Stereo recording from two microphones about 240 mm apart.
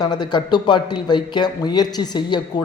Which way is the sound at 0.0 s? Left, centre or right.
Centre.